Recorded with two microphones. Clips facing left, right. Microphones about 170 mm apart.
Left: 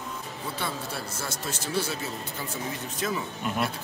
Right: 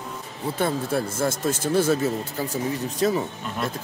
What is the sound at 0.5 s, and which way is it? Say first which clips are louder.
Speech: right 11 dB; 50° right (ahead or behind).